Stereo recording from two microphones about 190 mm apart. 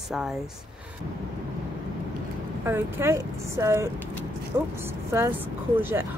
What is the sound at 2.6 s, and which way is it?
Speech, 10° right (ahead or behind).